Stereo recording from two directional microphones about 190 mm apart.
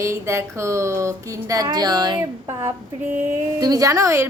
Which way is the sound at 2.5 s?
15° right (ahead or behind).